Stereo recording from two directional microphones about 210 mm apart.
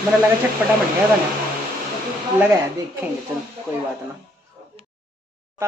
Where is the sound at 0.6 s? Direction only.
10° right (ahead or behind).